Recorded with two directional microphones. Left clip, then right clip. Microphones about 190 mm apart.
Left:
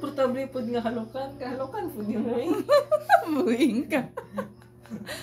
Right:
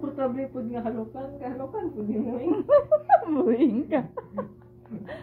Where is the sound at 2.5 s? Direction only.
15° left (ahead or behind).